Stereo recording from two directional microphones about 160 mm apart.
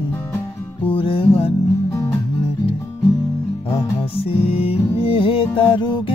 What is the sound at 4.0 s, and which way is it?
Music, 35° left (ahead or behind).